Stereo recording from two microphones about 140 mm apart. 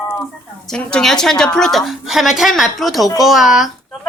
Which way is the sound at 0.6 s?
5° left (ahead or behind).